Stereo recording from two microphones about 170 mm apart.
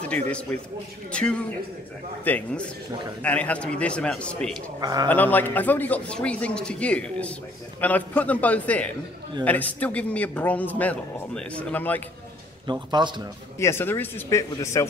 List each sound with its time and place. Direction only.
0.0 s a man's voice: 5° left (ahead or behind)
4.6 s a man's voice: 20° right (ahead or behind)
5.0 s speech: 10° left (ahead or behind)
12.9 s a man's voice: 25° right (ahead or behind)
13.6 s speech: 15° left (ahead or behind)